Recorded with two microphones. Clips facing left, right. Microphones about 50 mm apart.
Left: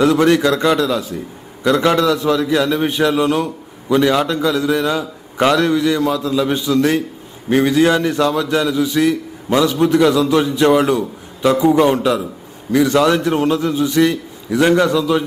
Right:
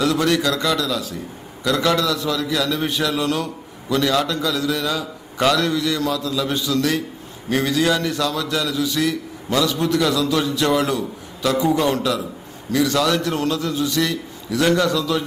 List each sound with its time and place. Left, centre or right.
0.0 s a man's voice: left